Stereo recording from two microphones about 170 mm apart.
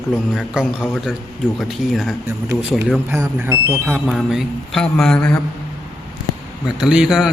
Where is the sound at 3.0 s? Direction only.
15° right (ahead or behind).